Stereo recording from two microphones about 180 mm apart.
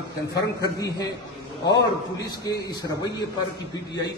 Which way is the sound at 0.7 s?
20° left (ahead or behind).